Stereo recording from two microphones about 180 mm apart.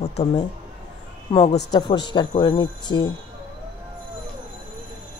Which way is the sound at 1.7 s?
25° left (ahead or behind).